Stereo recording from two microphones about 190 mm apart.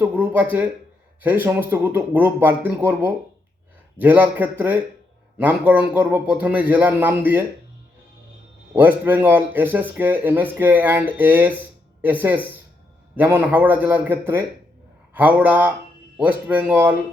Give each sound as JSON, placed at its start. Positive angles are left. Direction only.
{"t": 0.0, "sound": "speech", "side_deg": -10}
{"t": 8.7, "sound": "speech", "side_deg": -10}